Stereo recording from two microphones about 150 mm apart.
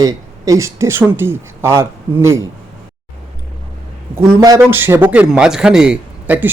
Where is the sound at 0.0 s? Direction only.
20° right (ahead or behind).